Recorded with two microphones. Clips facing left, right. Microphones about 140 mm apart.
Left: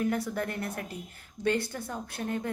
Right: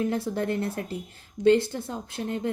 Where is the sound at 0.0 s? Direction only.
25° right (ahead or behind).